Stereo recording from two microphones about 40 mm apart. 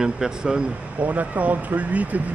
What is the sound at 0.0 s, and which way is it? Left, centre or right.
Speech, centre.